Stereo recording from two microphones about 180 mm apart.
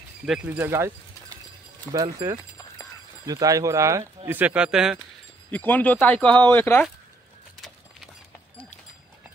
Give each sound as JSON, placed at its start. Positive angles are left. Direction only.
{"t": 0.3, "sound": "speech", "side_deg": -10}
{"t": 5.5, "sound": "speech", "side_deg": 10}